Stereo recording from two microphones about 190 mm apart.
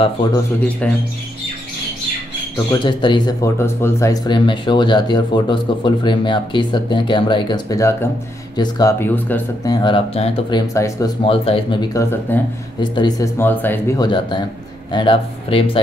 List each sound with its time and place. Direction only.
0.6 s speech: 10° left (ahead or behind)
2.5 s speech: 20° left (ahead or behind)
3.5 s speech: 15° left (ahead or behind)
9.8 s speech: 25° left (ahead or behind)
10.7 s speech: 15° left (ahead or behind)
11.2 s speech: 30° left (ahead or behind)
11.9 s speech: 15° left (ahead or behind)
13.4 s speech: 10° left (ahead or behind); by 15.8 s 30° left (ahead or behind)